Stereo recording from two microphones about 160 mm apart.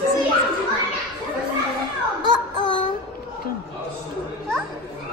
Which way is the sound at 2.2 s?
30° left (ahead or behind).